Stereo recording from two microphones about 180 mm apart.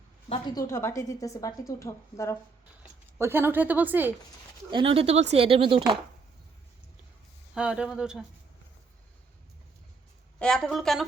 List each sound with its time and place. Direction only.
0.3 s a woman's voice: 20° left (ahead or behind)
3.2 s speech: 15° right (ahead or behind)
4.7 s speech: 30° right (ahead or behind)
7.5 s speech: 5° right (ahead or behind)
10.4 s speech: centre (ahead or behind)